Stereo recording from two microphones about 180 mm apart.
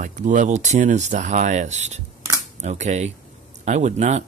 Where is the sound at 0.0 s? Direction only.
45° right (ahead or behind).